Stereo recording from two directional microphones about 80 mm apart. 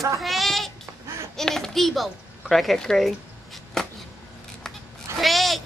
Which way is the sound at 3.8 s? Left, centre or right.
Centre.